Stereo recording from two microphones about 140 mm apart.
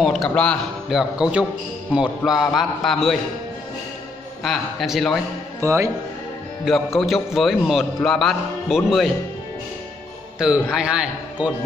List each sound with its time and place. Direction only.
0.0 s a man's voice: centre (ahead or behind)
4.4 s a man's voice: centre (ahead or behind)
5.6 s speech: 20° right (ahead or behind)
6.6 s a man's voice: centre (ahead or behind)
10.4 s a man's voice: 5° right (ahead or behind)